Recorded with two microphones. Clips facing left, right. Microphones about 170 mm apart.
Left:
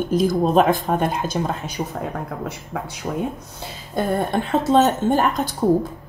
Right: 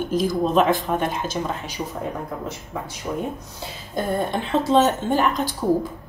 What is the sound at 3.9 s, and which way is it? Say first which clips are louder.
Speech: left 3 dB; 60° left (ahead or behind).